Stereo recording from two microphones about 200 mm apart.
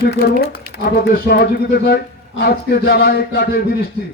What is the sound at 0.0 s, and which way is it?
Speech, 55° left (ahead or behind).